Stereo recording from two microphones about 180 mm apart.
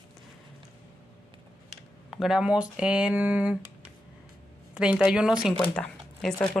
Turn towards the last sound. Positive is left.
turn(degrees=5)  # may be behind; listen again after turning